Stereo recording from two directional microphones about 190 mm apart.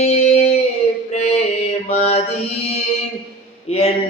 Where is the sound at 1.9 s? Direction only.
35° left (ahead or behind).